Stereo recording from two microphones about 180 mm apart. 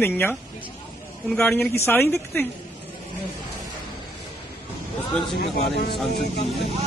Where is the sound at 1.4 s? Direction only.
10° left (ahead or behind).